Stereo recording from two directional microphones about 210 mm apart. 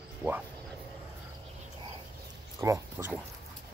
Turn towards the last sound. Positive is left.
turn(degrees=-10)  # may be behind; listen again after turning